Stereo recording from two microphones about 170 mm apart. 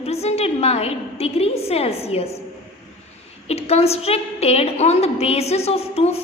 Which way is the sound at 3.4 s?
35° left (ahead or behind).